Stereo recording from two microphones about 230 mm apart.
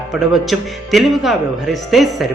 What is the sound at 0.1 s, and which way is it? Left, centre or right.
Speech, centre.